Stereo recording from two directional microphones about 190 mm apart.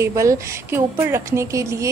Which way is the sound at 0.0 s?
15° right (ahead or behind).